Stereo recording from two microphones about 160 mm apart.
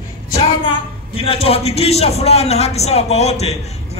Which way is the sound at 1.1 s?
35° left (ahead or behind).